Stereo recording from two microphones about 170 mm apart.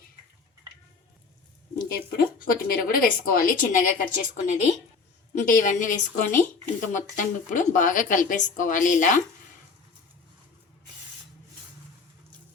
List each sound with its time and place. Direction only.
1.8 s a woman's voice: 60° left (ahead or behind)